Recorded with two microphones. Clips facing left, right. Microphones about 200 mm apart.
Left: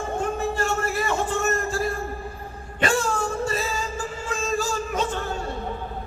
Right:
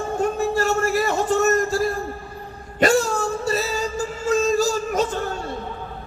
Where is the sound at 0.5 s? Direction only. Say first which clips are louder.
Right 5 dB; 40° right (ahead or behind).